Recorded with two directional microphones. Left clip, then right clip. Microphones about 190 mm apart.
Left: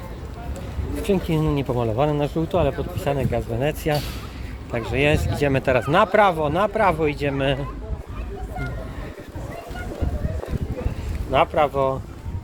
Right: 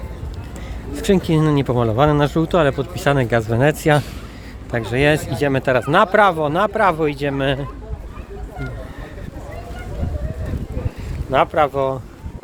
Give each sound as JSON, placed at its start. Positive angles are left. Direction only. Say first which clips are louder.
{"t": 1.0, "sound": "speech", "louder": "right 6 dB", "side_deg": -35}
{"t": 11.3, "sound": "speech", "louder": "right 3 dB", "side_deg": -30}